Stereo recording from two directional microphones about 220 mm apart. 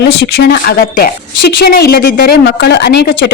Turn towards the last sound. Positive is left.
turn(degrees=50)  # may be behind; listen again after turning